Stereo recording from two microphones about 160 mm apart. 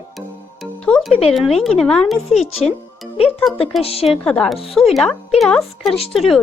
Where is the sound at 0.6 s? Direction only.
5° left (ahead or behind).